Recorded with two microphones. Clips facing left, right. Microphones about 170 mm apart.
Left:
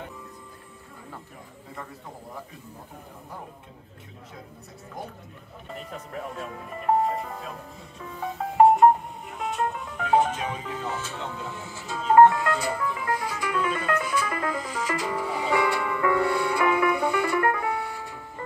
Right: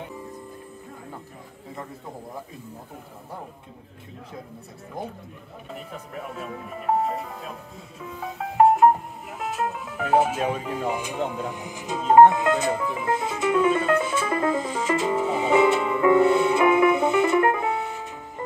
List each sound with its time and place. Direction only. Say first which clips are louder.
5.9 s speech: left 2 dB; 5° right (ahead or behind)
8.0 s music: left 1 dB; 5° right (ahead or behind); by 18.2 s 20° right (ahead or behind)